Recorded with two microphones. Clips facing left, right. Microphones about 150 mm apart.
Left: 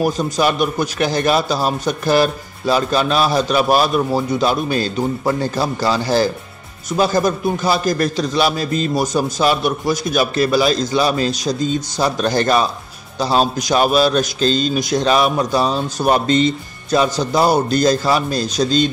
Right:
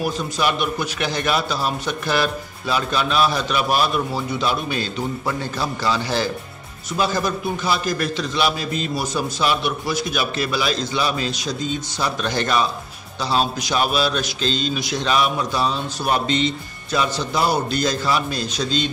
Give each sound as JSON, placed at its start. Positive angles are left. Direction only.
{"t": 0.0, "sound": "a man's voice", "side_deg": 40}